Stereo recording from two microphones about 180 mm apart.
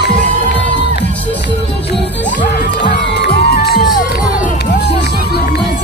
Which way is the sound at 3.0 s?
70° left (ahead or behind).